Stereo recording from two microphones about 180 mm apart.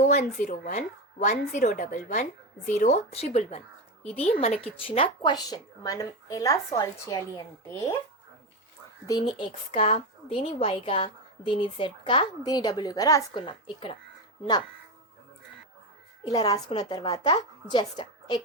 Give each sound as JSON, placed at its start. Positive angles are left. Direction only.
{"t": 0.0, "sound": "a woman's voice", "side_deg": 40}
{"t": 9.0, "sound": "a woman's voice", "side_deg": 20}
{"t": 9.7, "sound": "a woman's voice", "side_deg": 35}
{"t": 16.2, "sound": "a woman's voice", "side_deg": 20}